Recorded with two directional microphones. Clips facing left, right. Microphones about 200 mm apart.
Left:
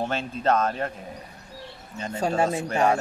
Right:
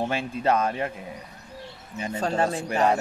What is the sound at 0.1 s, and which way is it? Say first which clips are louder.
Speech: even; 10° right (ahead or behind).